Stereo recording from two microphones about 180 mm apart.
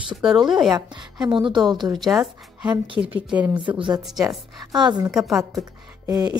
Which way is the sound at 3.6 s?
25° right (ahead or behind).